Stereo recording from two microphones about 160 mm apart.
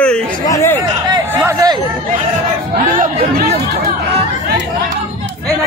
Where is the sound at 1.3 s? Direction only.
15° right (ahead or behind).